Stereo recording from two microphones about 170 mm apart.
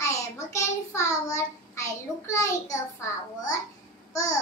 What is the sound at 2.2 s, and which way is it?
Child singing, 20° left (ahead or behind).